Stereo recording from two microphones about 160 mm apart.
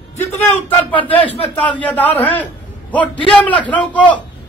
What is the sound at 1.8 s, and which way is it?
Speech, 10° left (ahead or behind).